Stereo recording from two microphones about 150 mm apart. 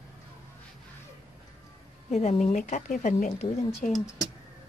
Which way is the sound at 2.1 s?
50° left (ahead or behind).